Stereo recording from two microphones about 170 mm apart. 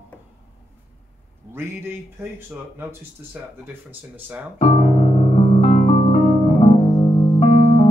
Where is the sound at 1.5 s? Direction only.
15° right (ahead or behind).